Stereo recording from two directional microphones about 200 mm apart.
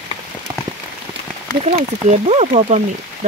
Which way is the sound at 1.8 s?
35° right (ahead or behind).